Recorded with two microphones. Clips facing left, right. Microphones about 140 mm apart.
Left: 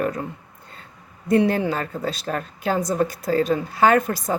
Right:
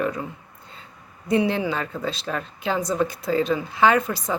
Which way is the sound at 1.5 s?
45° left (ahead or behind).